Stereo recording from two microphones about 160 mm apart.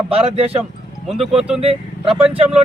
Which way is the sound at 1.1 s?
Centre (ahead or behind).